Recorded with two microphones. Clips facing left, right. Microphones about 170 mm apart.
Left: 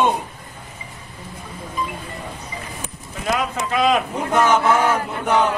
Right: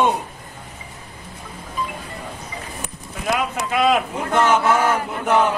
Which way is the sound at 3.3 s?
5° right (ahead or behind).